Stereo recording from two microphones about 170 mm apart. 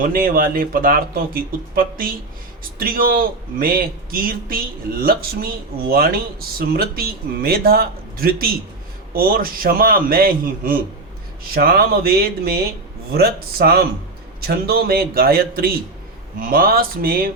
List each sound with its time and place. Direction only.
0.0 s speech: 60° right (ahead or behind)